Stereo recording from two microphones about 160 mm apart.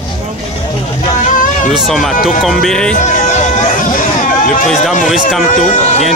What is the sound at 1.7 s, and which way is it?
Speech, centre (ahead or behind).